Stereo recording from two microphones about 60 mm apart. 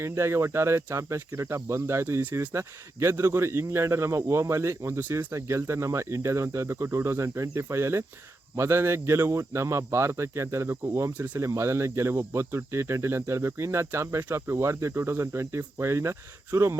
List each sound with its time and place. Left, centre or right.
0.0 s speech: right